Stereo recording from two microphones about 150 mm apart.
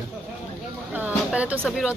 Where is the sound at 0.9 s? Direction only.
10° right (ahead or behind).